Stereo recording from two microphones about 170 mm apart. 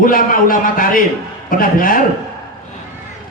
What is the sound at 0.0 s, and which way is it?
A man's voice, 55° left (ahead or behind).